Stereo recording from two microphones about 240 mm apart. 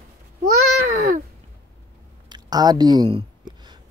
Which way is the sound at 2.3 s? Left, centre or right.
Centre.